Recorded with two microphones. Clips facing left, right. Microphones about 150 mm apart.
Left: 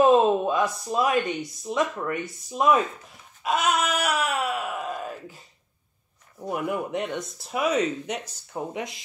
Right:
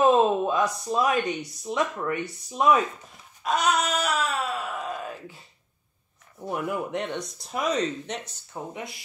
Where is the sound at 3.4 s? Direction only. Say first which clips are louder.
Even; 5° left (ahead or behind).